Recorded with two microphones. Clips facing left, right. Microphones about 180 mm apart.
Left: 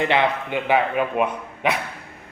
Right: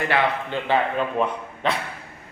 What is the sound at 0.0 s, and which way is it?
A man's voice, 20° left (ahead or behind).